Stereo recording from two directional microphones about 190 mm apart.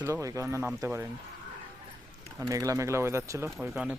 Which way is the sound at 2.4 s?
15° right (ahead or behind).